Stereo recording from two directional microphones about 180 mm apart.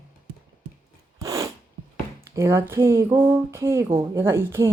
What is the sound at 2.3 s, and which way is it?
Speech, 15° right (ahead or behind).